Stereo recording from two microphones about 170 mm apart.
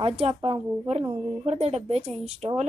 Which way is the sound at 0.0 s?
35° right (ahead or behind).